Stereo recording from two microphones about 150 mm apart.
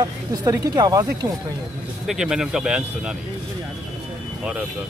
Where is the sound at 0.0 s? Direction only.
25° right (ahead or behind).